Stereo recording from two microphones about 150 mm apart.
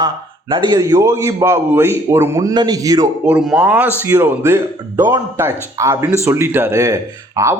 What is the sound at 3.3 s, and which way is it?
A man's voice, 5° right (ahead or behind).